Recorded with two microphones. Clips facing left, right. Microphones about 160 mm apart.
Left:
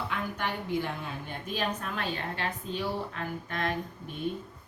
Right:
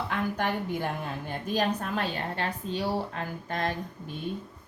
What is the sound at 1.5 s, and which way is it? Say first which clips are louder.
A woman's voice: right 5 dB; 40° right (ahead or behind).